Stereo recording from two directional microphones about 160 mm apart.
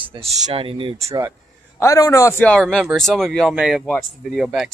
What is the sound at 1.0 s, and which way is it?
Speech, 20° right (ahead or behind).